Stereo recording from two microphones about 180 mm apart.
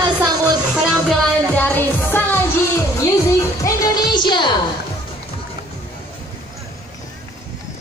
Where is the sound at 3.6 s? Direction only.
20° left (ahead or behind).